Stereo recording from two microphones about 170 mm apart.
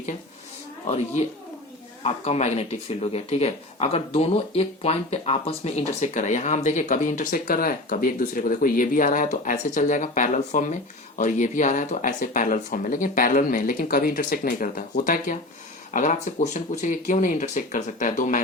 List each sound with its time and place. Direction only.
0.9 s speech: 40° left (ahead or behind)